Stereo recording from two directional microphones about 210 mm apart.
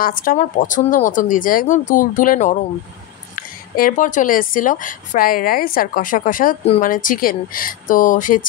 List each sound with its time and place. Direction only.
0.0 s speech: 40° left (ahead or behind)